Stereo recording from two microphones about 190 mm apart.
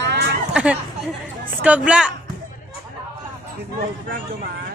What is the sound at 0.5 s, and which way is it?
Speech, 5° right (ahead or behind).